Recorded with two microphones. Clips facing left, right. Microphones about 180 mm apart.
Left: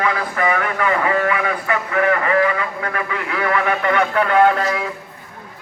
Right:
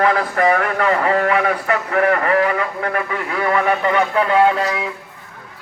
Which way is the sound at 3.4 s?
35° right (ahead or behind).